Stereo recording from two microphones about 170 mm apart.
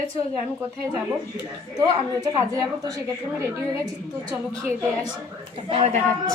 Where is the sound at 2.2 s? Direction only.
25° right (ahead or behind).